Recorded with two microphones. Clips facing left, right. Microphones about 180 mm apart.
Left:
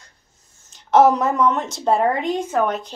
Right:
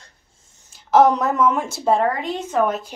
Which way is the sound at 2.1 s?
20° left (ahead or behind).